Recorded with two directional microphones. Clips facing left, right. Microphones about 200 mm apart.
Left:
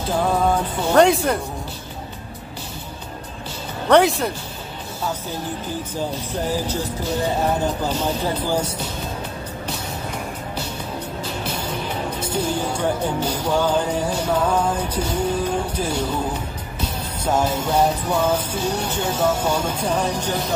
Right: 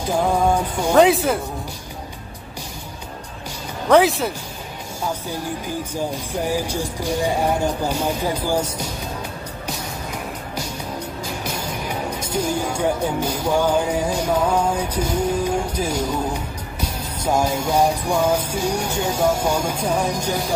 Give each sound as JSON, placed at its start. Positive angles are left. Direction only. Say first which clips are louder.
{"t": 0.1, "sound": "music", "louder": "right 1 dB", "side_deg": -10}
{"t": 3.9, "sound": "speech", "louder": "even", "side_deg": 0}
{"t": 5.9, "sound": "music", "louder": "even", "side_deg": -10}
{"t": 11.4, "sound": "music", "louder": "even", "side_deg": -10}
{"t": 15.0, "sound": "music", "louder": "right 1 dB", "side_deg": 10}
{"t": 15.2, "sound": "music", "louder": "right 1 dB", "side_deg": -10}
{"t": 17.2, "sound": "music", "louder": "right 1 dB", "side_deg": -10}